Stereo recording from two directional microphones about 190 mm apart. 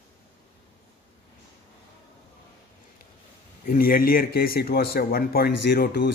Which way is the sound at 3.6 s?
50° left (ahead or behind).